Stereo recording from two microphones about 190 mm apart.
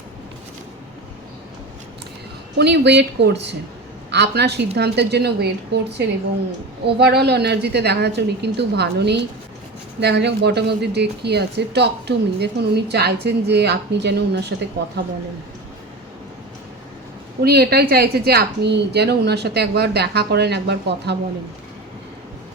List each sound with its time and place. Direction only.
2.6 s a woman's voice: 65° right (ahead or behind)
6.8 s a woman's voice: 60° right (ahead or behind)
17.4 s a woman's voice: 55° right (ahead or behind)